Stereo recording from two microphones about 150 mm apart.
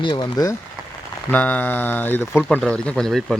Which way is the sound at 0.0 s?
30° left (ahead or behind).